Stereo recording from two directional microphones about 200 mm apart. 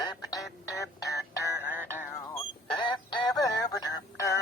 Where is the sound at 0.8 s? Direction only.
15° left (ahead or behind).